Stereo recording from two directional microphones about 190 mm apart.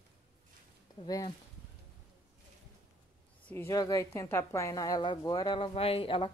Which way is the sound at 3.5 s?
15° left (ahead or behind).